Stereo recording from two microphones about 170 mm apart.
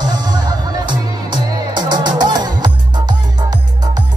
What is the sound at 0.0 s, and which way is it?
Music, 25° right (ahead or behind).